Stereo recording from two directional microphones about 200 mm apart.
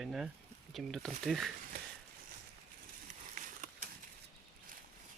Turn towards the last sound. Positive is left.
turn(degrees=-40)  # may be behind; listen again after turning